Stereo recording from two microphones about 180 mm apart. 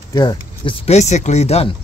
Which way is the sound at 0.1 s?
25° left (ahead or behind).